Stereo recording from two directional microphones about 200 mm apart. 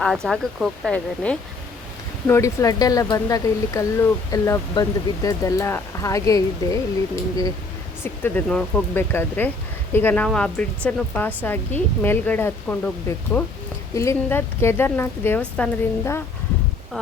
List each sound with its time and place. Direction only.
0.0 s speech: centre (ahead or behind)
8.0 s speech: 10° left (ahead or behind)